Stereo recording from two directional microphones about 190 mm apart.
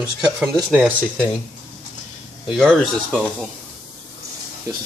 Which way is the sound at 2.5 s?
Centre (ahead or behind).